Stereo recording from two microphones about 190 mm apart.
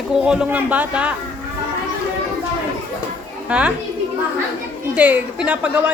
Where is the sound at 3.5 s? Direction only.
5° right (ahead or behind).